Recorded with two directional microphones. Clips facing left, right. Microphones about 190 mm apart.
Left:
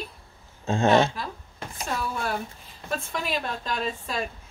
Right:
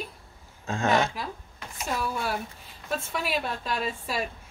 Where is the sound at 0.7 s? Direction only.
25° left (ahead or behind).